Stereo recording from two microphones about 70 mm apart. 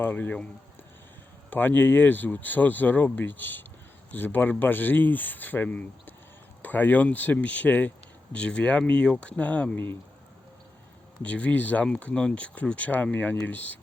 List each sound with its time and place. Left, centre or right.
0.0 s speech: left
1.5 s speech: left
11.2 s speech: centre